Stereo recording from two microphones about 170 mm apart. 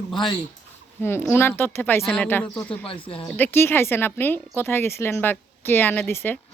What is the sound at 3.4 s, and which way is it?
Speech, 10° left (ahead or behind).